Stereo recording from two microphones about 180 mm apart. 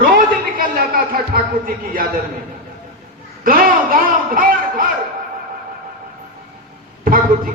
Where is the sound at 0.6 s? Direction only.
55° right (ahead or behind).